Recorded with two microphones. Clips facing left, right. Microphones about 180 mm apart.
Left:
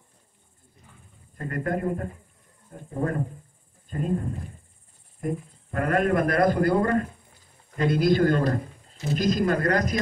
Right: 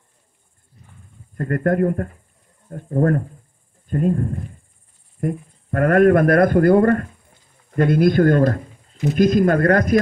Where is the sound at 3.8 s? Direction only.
55° right (ahead or behind).